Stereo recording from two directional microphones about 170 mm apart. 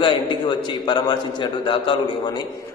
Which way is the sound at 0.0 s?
30° left (ahead or behind).